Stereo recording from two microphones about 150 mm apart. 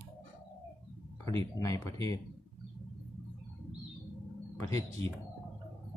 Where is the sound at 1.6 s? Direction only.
20° left (ahead or behind).